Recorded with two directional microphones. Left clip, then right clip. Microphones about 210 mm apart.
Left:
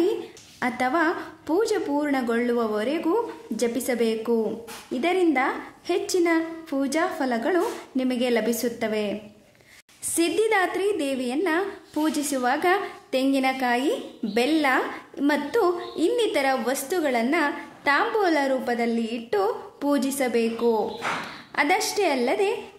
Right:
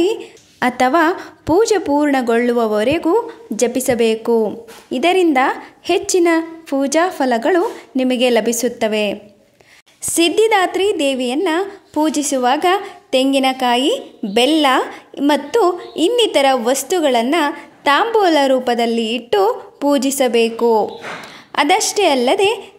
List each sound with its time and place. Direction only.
0.6 s a woman's voice: 40° right (ahead or behind)
10.1 s a woman's voice: 35° right (ahead or behind)